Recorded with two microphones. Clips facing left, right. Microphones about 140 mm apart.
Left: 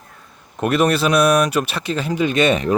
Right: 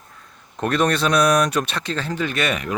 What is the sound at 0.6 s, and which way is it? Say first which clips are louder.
Speech: left 3 dB; 5° left (ahead or behind).